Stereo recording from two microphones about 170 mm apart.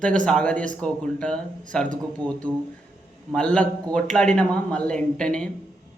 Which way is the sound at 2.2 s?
25° right (ahead or behind).